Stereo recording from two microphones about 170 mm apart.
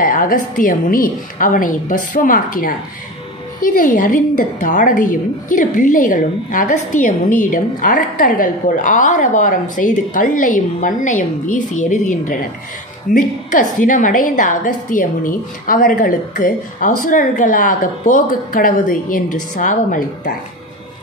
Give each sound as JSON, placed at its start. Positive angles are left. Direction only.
{"t": 0.0, "sound": "a woman's voice", "side_deg": 50}